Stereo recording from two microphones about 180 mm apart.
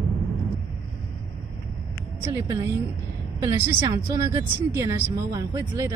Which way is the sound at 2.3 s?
20° right (ahead or behind).